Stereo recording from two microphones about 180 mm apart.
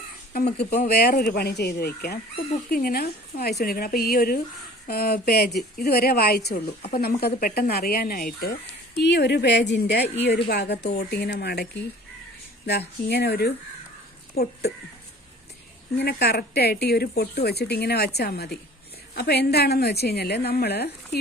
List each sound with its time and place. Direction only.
0.3 s speech: 60° left (ahead or behind)
13.1 s speech: 60° left (ahead or behind)
16.0 s speech: 65° left (ahead or behind)